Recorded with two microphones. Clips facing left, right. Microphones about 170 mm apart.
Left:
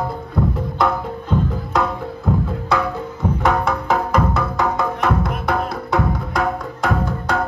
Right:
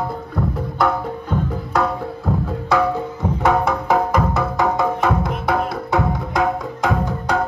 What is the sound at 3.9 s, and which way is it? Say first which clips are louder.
Music: right 1 dB; 10° right (ahead or behind).